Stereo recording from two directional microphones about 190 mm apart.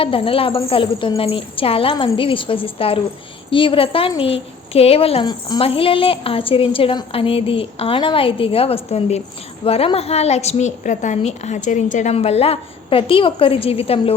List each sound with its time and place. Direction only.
0.0 s a woman's voice: 30° left (ahead or behind)